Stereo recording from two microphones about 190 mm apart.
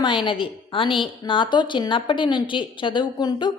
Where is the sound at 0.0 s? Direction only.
25° left (ahead or behind).